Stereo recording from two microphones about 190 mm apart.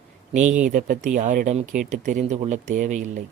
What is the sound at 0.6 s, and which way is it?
Speech, 45° right (ahead or behind).